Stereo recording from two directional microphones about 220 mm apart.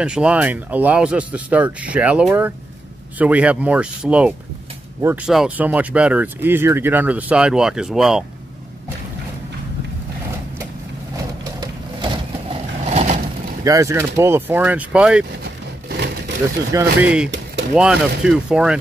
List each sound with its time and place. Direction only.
0.0 s speech: 5° right (ahead or behind)
11.6 s vehicle: 25° right (ahead or behind)
13.7 s speech: 15° right (ahead or behind)
15.4 s a sound: 50° right (ahead or behind)
16.7 s speech: 5° right (ahead or behind)